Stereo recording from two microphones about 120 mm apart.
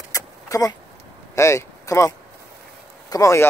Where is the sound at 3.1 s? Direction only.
25° left (ahead or behind).